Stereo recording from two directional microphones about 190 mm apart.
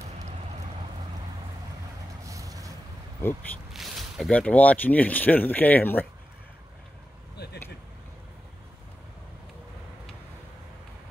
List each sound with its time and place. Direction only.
2.2 s vehicle: 15° right (ahead or behind)
3.7 s speech: centre (ahead or behind)